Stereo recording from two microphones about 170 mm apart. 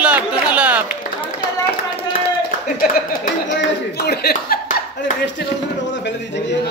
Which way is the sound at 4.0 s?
70° left (ahead or behind).